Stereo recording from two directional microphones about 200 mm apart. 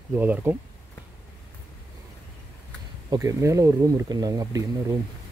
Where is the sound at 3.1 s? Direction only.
15° right (ahead or behind).